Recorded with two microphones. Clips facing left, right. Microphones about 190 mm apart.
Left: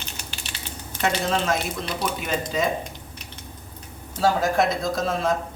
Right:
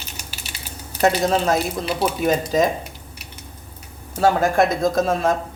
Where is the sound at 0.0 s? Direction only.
5° right (ahead or behind).